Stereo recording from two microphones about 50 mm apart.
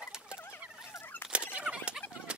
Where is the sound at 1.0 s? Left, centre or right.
Left.